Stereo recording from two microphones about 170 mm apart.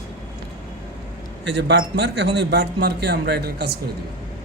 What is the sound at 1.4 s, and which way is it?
A man's voice, 90° right.